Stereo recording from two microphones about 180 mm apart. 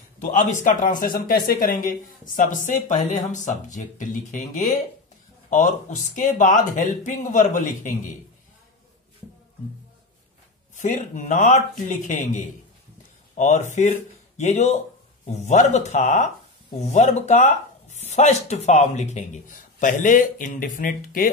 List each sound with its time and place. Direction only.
0.2 s speech: 45° left (ahead or behind)
10.8 s speech: 45° left (ahead or behind)